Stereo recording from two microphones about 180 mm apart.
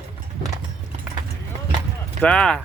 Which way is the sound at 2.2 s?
5° left (ahead or behind).